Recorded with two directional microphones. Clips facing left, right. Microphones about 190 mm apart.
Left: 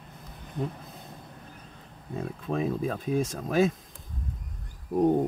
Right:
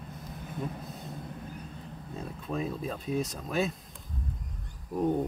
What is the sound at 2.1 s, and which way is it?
Speech, 55° left (ahead or behind).